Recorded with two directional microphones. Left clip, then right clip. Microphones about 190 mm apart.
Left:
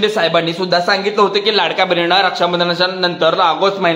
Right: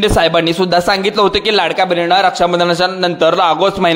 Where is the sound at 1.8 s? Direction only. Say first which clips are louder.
Right 1 dB; 25° right (ahead or behind); by 3.9 s 40° right (ahead or behind).